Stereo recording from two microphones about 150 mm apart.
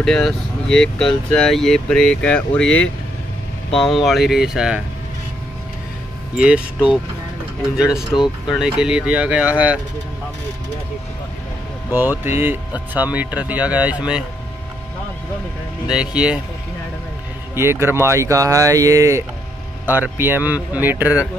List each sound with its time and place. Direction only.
0.0 s speech: 5° left (ahead or behind)
6.3 s speech: 5° right (ahead or behind)
8.1 s speech: 5° right (ahead or behind)
11.9 s speech: 15° right (ahead or behind)
15.9 s speech: 5° right (ahead or behind)
17.6 s speech: 15° right (ahead or behind)